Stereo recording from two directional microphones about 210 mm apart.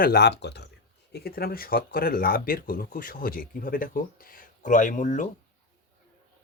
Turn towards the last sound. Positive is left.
turn(degrees=35)  # may be behind; listen again after turning